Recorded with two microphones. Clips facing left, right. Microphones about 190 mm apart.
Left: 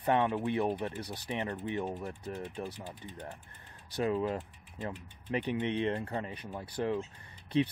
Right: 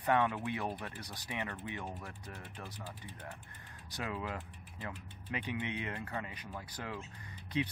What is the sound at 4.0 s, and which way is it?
Speech, 30° left (ahead or behind).